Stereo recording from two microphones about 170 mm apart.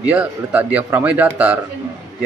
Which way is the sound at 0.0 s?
10° right (ahead or behind).